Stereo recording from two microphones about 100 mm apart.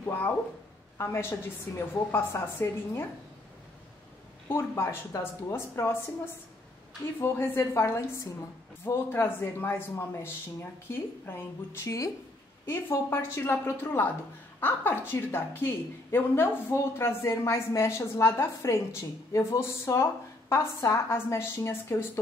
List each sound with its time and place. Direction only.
0.0 s a woman's voice: 20° left (ahead or behind)
4.5 s a woman's voice: 30° left (ahead or behind)
7.2 s a woman's voice: 25° left (ahead or behind)